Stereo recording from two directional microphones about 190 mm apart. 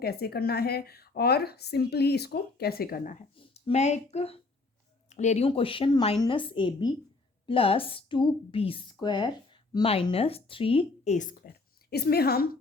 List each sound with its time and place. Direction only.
0.0 s a woman's voice: 55° left (ahead or behind)